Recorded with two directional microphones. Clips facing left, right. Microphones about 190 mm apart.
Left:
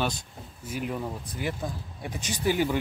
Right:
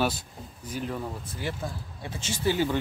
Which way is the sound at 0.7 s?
10° left (ahead or behind).